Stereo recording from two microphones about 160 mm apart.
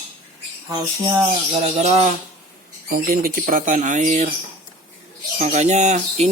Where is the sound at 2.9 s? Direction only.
60° right (ahead or behind).